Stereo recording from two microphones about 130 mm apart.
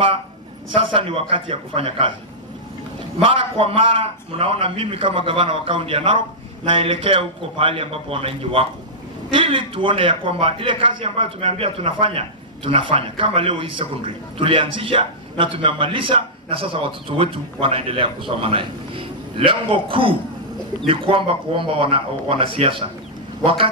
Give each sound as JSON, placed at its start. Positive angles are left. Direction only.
{"t": 0.7, "sound": "a man's voice", "side_deg": -45}
{"t": 3.2, "sound": "a man's voice", "side_deg": -45}